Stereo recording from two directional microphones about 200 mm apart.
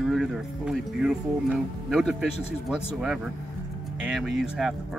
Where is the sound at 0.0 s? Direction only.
Centre (ahead or behind).